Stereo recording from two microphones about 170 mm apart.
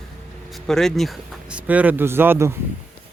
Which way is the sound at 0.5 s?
5° left (ahead or behind).